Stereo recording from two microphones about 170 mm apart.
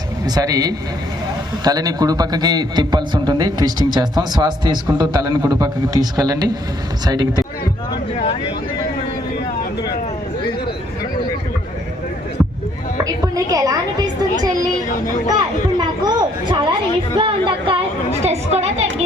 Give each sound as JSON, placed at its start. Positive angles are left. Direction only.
{"t": 0.3, "sound": "a man's voice", "side_deg": -20}
{"t": 13.2, "sound": "music", "side_deg": -20}
{"t": 15.8, "sound": "a sound", "side_deg": -25}